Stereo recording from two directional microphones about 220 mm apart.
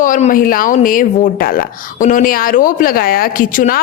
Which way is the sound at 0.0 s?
35° left (ahead or behind).